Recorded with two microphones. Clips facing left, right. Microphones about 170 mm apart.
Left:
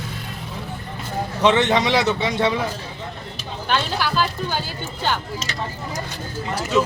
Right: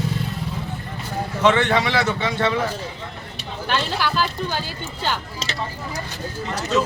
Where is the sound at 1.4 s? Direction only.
20° left (ahead or behind).